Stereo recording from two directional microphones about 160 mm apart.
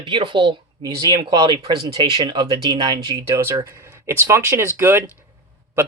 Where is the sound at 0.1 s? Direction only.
30° right (ahead or behind).